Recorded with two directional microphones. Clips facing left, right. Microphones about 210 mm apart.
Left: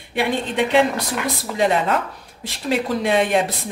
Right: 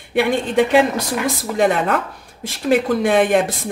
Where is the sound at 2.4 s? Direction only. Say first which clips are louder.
Right 5 dB; 50° right (ahead or behind).